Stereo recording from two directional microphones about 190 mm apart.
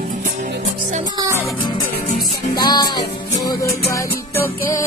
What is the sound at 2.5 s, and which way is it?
Music, 20° left (ahead or behind).